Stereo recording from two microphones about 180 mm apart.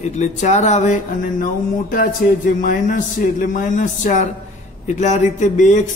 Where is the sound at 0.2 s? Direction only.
40° left (ahead or behind).